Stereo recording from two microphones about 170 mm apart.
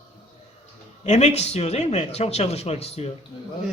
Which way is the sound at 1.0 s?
40° left (ahead or behind).